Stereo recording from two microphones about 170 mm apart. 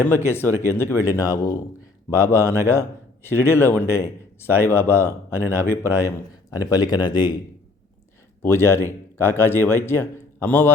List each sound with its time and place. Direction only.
0.0 s speech: 15° left (ahead or behind)
8.4 s speech: 15° left (ahead or behind)